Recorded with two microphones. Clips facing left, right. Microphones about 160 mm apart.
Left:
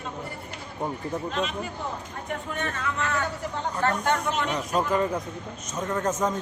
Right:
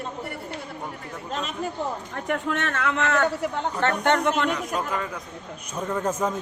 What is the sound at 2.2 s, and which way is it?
A man's voice, 80° right.